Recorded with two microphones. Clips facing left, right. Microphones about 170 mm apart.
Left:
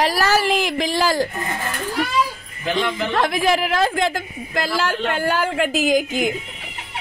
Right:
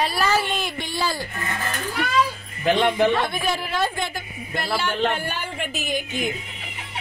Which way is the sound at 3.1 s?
90° left.